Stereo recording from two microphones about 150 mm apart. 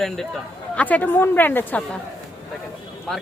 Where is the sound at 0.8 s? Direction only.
10° left (ahead or behind).